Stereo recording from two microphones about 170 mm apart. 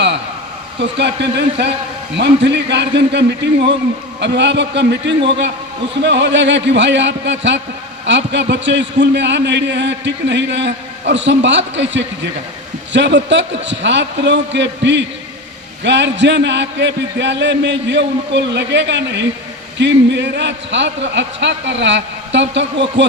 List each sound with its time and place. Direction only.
0.8 s a man's voice: 90° right